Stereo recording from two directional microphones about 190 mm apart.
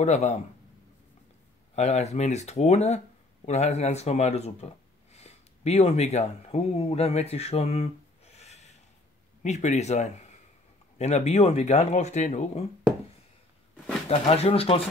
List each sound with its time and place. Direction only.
0.0 s speech: 35° left (ahead or behind)
1.8 s speech: 35° left (ahead or behind)
14.0 s speech: 30° left (ahead or behind)